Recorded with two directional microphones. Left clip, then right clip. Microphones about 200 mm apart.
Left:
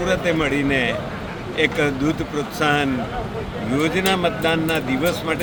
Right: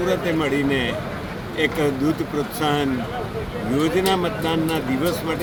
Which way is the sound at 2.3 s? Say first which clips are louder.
Left 2 dB; 5° left (ahead or behind).